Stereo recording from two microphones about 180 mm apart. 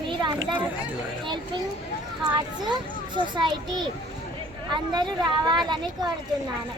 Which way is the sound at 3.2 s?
25° right (ahead or behind).